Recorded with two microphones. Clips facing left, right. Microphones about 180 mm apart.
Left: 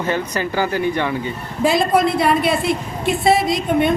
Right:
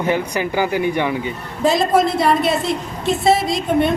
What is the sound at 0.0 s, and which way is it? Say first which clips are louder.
Speech: right 2 dB; 15° right (ahead or behind).